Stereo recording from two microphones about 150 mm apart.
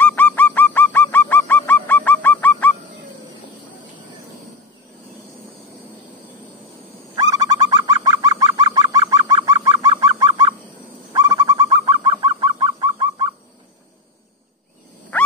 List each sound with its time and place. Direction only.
0.0 s goose: 10° left (ahead or behind)
7.2 s bird: 25° right (ahead or behind)